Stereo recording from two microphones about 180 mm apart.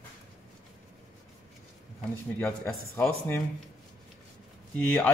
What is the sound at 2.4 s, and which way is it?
Speech, 10° left (ahead or behind).